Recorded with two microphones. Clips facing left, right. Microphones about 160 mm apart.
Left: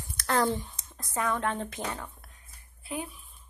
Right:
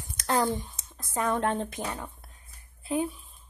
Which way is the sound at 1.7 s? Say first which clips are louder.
Right 1 dB; 15° right (ahead or behind).